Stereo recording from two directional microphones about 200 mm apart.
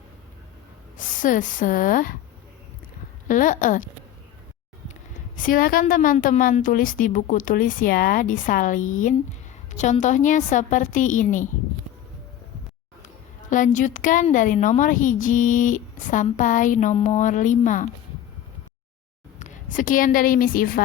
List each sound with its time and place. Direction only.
0.9 s a woman's voice: 40° left (ahead or behind)
3.2 s a woman's voice: 40° left (ahead or behind)
5.4 s a woman's voice: 45° left (ahead or behind)
13.5 s a woman's voice: 40° left (ahead or behind)
19.4 s a woman's voice: 40° left (ahead or behind)